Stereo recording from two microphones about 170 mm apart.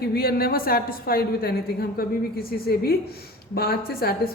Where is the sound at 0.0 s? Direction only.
65° left (ahead or behind).